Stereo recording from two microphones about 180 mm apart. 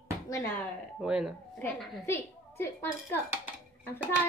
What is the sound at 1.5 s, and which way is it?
Speech, 10° left (ahead or behind).